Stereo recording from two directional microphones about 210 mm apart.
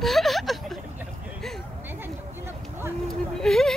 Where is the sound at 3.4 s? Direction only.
Centre (ahead or behind).